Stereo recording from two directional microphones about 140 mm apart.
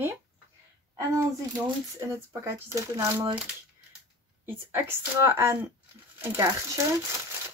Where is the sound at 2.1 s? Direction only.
20° right (ahead or behind).